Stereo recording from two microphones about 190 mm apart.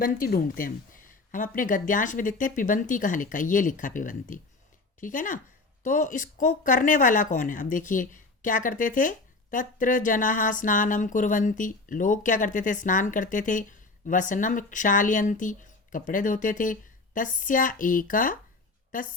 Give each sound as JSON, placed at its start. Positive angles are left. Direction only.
{"t": 0.0, "sound": "speech", "side_deg": 50}